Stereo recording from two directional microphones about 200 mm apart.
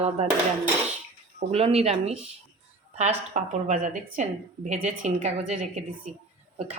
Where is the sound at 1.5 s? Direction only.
30° right (ahead or behind).